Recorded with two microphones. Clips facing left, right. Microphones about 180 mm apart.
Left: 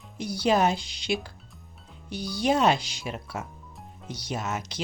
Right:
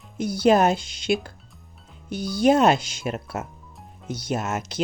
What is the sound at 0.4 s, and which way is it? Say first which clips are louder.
Speech: right 5 dB; 50° right (ahead or behind).